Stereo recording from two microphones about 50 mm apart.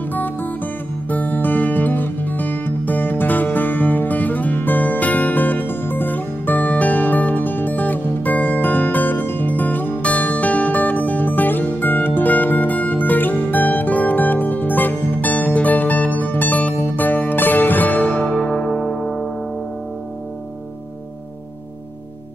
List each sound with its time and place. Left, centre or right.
0.1 s music: left
18.0 s music: left